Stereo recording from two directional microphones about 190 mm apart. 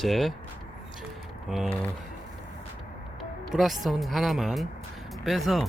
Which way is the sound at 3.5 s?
Centre (ahead or behind).